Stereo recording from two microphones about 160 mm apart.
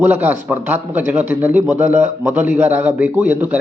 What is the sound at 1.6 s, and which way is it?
Speech, 45° right (ahead or behind).